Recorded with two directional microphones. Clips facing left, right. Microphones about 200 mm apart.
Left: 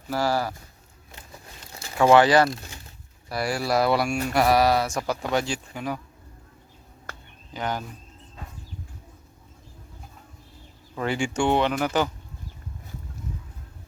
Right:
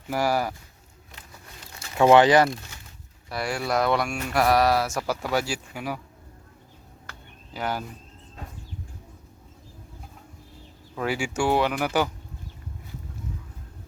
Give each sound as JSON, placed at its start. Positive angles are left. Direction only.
{"t": 0.1, "sound": "speech", "side_deg": -15}
{"t": 2.0, "sound": "speech", "side_deg": -20}
{"t": 3.2, "sound": "speech", "side_deg": 5}
{"t": 7.5, "sound": "speech", "side_deg": -10}
{"t": 10.9, "sound": "speech", "side_deg": -5}